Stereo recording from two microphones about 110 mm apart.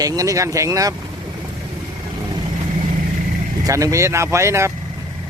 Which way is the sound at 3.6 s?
30° right (ahead or behind).